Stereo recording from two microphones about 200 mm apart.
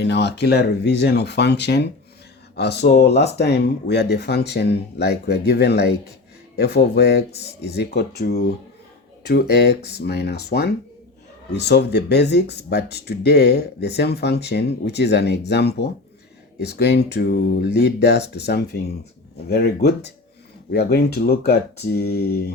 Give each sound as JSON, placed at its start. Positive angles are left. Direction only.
{"t": 0.0, "sound": "speech", "side_deg": 60}